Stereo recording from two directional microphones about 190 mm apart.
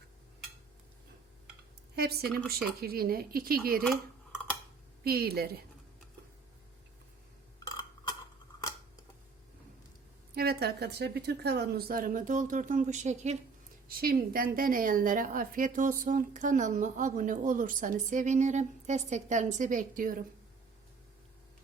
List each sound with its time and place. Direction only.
2.0 s a woman's voice: 55° right (ahead or behind)
5.0 s a woman's voice: 55° right (ahead or behind)
7.7 s a sound: 20° left (ahead or behind)
10.3 s a woman's voice: 55° right (ahead or behind); by 13.4 s 40° right (ahead or behind)
13.8 s a woman's voice: 50° right (ahead or behind)